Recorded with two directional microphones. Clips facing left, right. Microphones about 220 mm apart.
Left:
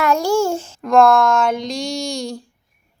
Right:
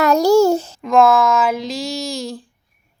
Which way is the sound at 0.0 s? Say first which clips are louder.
Right 5 dB; 40° right (ahead or behind).